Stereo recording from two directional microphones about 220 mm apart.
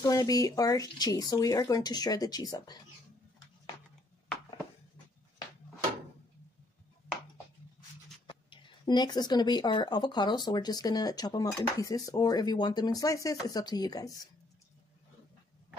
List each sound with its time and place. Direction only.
0.0 s speech: 15° left (ahead or behind)
8.3 s speech: 20° left (ahead or behind)